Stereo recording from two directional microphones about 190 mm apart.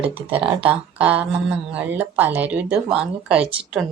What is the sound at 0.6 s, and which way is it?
Speech, 5° right (ahead or behind).